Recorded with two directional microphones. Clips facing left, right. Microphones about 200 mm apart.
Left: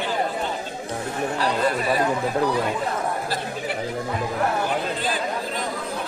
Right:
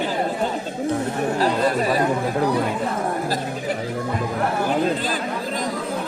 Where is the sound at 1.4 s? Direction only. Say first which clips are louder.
Right 3 dB; 40° right (ahead or behind).